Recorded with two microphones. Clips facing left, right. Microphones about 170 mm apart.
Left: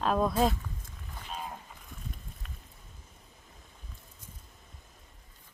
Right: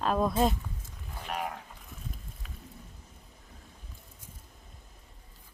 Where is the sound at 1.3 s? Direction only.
70° right (ahead or behind).